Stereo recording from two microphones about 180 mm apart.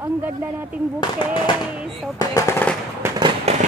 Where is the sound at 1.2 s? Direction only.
25° left (ahead or behind).